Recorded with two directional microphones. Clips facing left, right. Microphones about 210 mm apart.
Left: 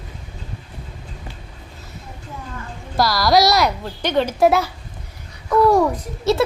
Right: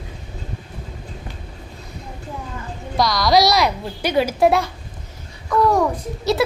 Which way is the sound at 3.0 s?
5° left (ahead or behind).